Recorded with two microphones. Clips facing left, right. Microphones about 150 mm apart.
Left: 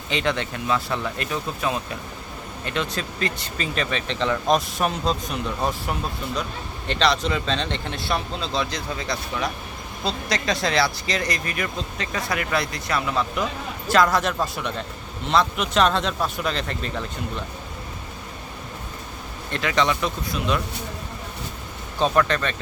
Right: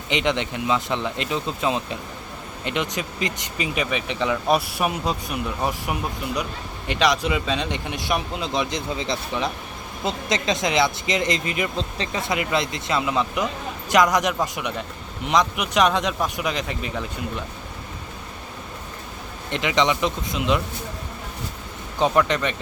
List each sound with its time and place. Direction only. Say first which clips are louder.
0.1 s speech: right 2 dB; 20° right (ahead or behind)
19.5 s speech: right 1 dB; 20° right (ahead or behind)
21.9 s speech: right 1 dB; 15° right (ahead or behind)